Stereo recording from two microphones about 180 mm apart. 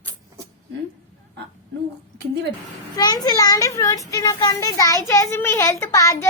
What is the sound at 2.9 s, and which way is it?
A child's voice, 20° left (ahead or behind).